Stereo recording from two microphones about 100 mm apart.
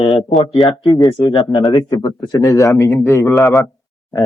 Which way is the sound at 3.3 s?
Centre (ahead or behind).